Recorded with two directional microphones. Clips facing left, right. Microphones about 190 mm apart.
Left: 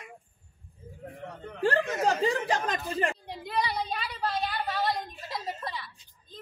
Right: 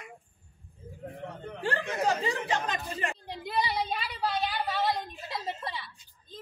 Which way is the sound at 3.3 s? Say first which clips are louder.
Even; centre (ahead or behind).